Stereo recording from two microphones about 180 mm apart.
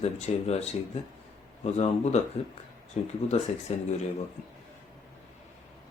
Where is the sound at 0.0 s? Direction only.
35° left (ahead or behind).